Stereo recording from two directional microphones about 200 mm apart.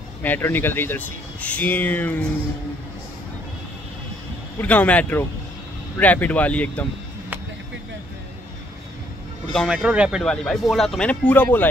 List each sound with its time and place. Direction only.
0.2 s speech: 10° left (ahead or behind)
4.6 s speech: 5° left (ahead or behind)
9.5 s speech: centre (ahead or behind)